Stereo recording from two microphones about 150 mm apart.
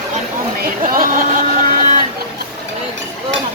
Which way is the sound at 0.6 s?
70° right (ahead or behind).